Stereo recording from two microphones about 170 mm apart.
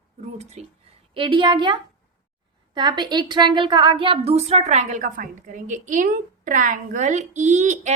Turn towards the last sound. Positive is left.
turn(degrees=-45)  # may be behind; listen again after turning